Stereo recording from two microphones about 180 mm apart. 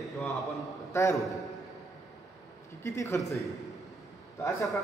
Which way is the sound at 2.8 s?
15° left (ahead or behind).